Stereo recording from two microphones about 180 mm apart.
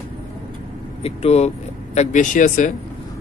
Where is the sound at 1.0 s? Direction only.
35° left (ahead or behind).